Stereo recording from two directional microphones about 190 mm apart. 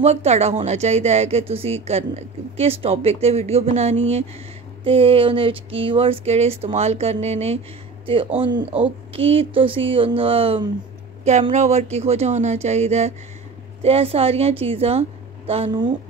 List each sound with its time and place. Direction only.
0.0 s speech: 35° right (ahead or behind)
8.8 s speech: 30° right (ahead or behind)